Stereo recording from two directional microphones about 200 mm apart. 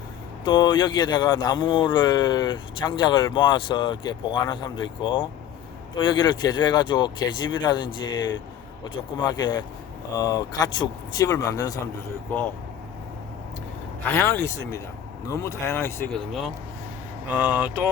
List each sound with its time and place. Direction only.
0.4 s speech: 20° left (ahead or behind)
14.0 s speech: 10° left (ahead or behind)
17.2 s speech: 10° right (ahead or behind)